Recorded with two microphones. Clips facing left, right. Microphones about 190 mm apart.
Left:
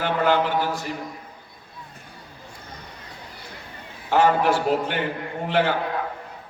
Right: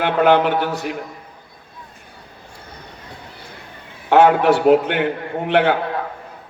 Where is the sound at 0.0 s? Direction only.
65° right (ahead or behind).